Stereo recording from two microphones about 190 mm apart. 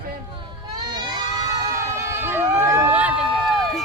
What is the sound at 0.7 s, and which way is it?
Crowd, 20° right (ahead or behind).